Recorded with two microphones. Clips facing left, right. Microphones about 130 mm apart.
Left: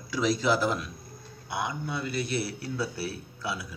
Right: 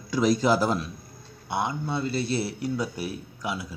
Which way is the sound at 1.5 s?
25° right (ahead or behind).